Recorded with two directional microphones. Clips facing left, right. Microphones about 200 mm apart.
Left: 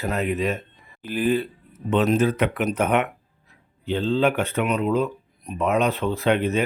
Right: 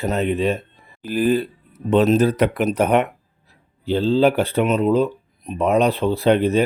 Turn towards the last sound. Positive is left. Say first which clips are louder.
# right 5 dB
turn(degrees=-35)  # may be behind; listen again after turning